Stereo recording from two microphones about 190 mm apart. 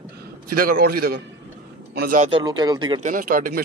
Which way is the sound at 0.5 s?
50° right (ahead or behind).